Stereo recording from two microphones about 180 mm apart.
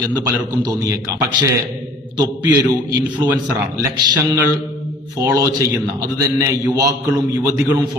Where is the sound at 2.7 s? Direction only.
20° right (ahead or behind).